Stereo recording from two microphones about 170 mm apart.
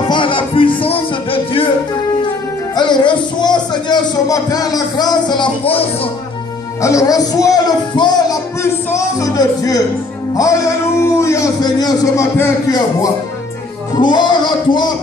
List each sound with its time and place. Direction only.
0.1 s music: 30° left (ahead or behind)
6.8 s a man's voice: 20° left (ahead or behind)